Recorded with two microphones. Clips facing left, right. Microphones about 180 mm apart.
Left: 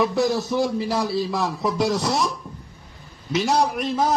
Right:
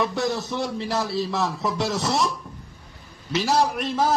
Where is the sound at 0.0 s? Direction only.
Centre (ahead or behind).